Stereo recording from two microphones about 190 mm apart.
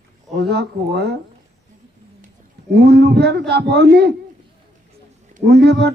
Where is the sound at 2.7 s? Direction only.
60° right (ahead or behind).